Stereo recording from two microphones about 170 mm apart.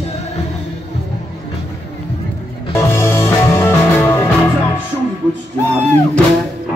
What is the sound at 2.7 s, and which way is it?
Music, 15° left (ahead or behind).